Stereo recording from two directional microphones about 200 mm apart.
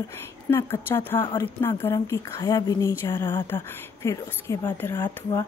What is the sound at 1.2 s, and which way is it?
Speech, 25° left (ahead or behind).